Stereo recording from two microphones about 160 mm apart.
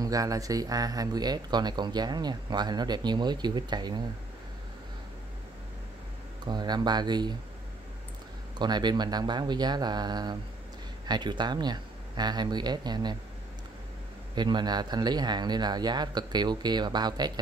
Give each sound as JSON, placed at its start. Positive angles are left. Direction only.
{"t": 0.0, "sound": "speech", "side_deg": -20}
{"t": 6.4, "sound": "speech", "side_deg": -25}
{"t": 8.5, "sound": "speech", "side_deg": -25}
{"t": 14.3, "sound": "speech", "side_deg": -25}